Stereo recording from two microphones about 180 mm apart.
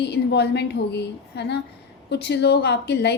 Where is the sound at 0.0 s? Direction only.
70° left (ahead or behind).